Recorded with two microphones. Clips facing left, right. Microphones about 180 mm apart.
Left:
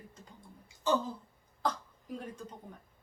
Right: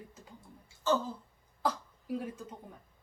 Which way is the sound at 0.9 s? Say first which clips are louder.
Even; 15° left (ahead or behind).